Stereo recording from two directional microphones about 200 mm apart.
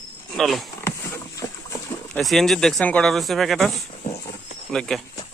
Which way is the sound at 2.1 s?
Centre (ahead or behind).